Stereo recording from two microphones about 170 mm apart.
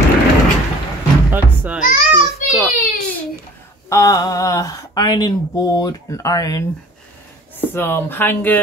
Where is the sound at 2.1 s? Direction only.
5° right (ahead or behind).